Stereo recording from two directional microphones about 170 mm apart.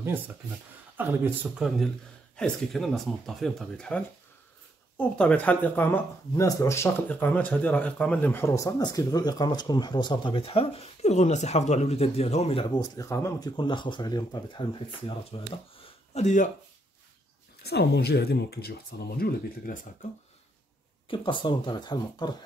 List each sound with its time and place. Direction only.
0.9 s speech: 10° right (ahead or behind)
2.3 s speech: 5° left (ahead or behind); by 16.4 s 45° left (ahead or behind)
17.6 s speech: 70° left (ahead or behind); by 19.9 s 55° left (ahead or behind)
21.1 s speech: 30° left (ahead or behind)